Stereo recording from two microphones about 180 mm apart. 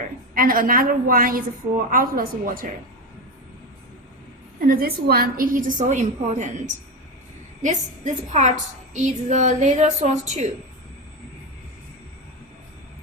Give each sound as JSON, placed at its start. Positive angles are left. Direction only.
{"t": 0.3, "sound": "a woman's voice", "side_deg": -50}
{"t": 4.7, "sound": "a woman's voice", "side_deg": -55}
{"t": 7.6, "sound": "a woman's voice", "side_deg": -40}